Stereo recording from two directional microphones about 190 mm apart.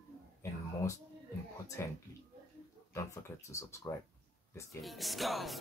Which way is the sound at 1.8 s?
15° left (ahead or behind).